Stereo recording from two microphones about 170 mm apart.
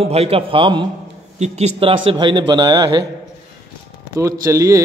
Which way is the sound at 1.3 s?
40° right (ahead or behind).